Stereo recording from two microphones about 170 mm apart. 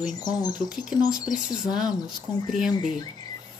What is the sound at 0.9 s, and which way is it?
Speech, 5° right (ahead or behind).